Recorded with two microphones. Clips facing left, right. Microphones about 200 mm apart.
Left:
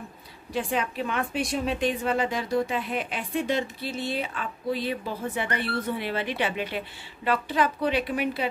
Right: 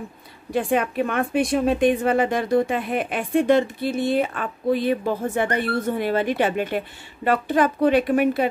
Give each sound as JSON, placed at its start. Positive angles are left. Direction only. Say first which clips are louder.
{"t": 0.5, "sound": "a woman's voice", "louder": "right 6 dB", "side_deg": -55}